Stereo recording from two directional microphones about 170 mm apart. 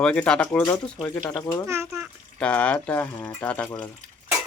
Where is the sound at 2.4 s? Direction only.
5° left (ahead or behind).